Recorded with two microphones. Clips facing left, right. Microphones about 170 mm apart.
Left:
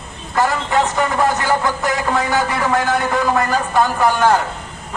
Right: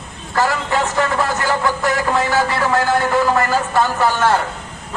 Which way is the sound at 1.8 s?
20° left (ahead or behind).